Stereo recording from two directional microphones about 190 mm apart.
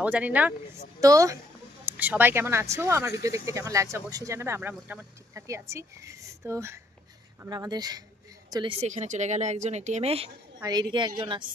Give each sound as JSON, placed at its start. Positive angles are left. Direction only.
{"t": 0.0, "sound": "a woman's voice", "side_deg": -5}
{"t": 8.8, "sound": "speech", "side_deg": -40}
{"t": 10.6, "sound": "a woman's voice", "side_deg": -20}